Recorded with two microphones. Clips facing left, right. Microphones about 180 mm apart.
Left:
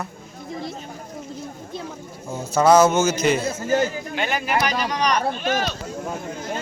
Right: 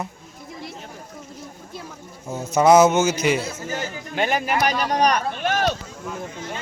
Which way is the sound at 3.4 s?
40° left (ahead or behind).